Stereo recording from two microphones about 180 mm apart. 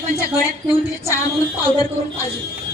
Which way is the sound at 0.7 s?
15° left (ahead or behind).